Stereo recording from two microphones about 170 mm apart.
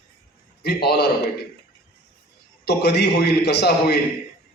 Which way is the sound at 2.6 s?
80° left.